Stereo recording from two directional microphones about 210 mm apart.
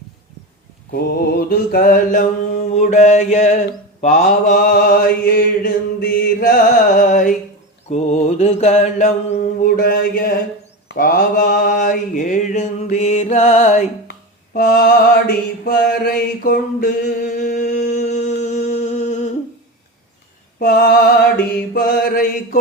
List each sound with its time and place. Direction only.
0.9 s mantra: 50° left (ahead or behind)
14.1 s a sound: 40° left (ahead or behind)
15.6 s mantra: 45° left (ahead or behind)
20.6 s mantra: 45° left (ahead or behind)